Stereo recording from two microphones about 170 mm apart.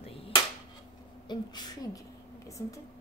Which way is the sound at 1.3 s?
25° left (ahead or behind).